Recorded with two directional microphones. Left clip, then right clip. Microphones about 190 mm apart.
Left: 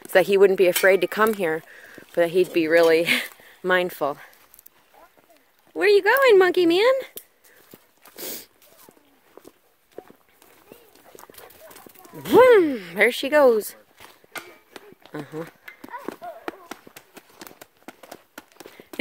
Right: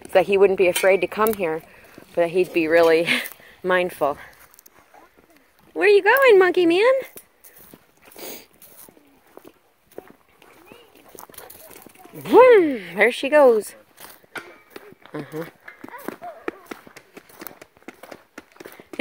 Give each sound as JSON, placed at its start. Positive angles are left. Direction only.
{"t": 0.1, "sound": "speech", "side_deg": 40}
{"t": 5.8, "sound": "speech", "side_deg": 15}
{"t": 8.2, "sound": "speech", "side_deg": 35}
{"t": 10.0, "sound": "walk", "side_deg": -55}
{"t": 12.2, "sound": "speech", "side_deg": 25}
{"t": 15.1, "sound": "speech", "side_deg": 20}
{"t": 16.1, "sound": "a sound", "side_deg": -65}
{"t": 16.4, "sound": "basketball bounce", "side_deg": 0}